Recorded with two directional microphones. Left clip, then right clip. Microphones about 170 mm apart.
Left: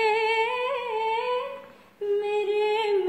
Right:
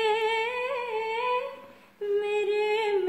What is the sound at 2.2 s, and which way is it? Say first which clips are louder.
Music: left 2 dB; 5° right (ahead or behind).